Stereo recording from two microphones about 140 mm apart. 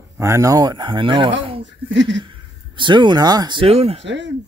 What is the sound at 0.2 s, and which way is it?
Speech, 20° right (ahead or behind).